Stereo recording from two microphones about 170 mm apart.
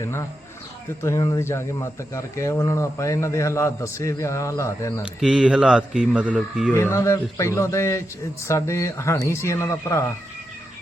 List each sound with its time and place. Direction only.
0.0 s speech: 15° left (ahead or behind)
5.2 s a man's voice: 5° right (ahead or behind)
6.7 s speech: 15° left (ahead or behind)